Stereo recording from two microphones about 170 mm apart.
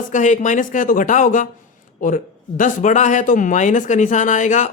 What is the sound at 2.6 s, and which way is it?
Speech, 50° left (ahead or behind).